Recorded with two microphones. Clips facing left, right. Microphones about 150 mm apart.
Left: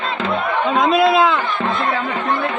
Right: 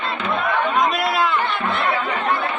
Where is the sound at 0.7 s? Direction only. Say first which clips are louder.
Left 5 dB; 25° left (ahead or behind).